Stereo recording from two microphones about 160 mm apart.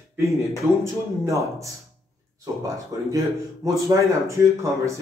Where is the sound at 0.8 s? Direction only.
20° right (ahead or behind).